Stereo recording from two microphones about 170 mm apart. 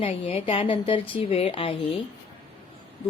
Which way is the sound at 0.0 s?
35° left (ahead or behind).